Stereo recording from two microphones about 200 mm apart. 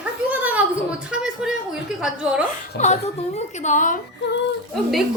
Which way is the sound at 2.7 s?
35° left (ahead or behind).